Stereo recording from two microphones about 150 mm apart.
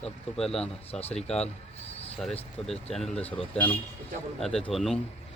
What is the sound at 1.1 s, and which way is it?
Speech, 5° left (ahead or behind).